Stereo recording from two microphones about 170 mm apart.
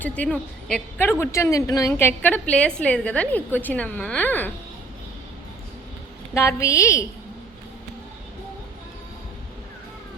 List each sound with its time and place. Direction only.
0.0 s a woman's voice: 5° left (ahead or behind)
6.3 s a woman's voice: 15° left (ahead or behind)